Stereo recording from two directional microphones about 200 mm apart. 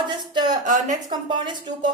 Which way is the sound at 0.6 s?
40° right (ahead or behind).